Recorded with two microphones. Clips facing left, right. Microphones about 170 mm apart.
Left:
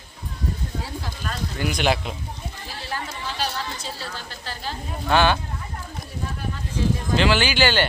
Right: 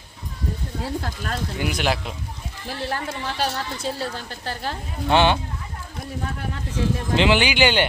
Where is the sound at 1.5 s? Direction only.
5° right (ahead or behind).